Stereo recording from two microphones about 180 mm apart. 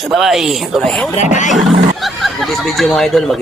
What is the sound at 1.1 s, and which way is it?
Speech, 40° left (ahead or behind).